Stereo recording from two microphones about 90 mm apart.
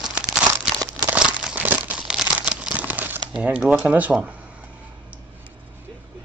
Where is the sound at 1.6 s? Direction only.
20° right (ahead or behind).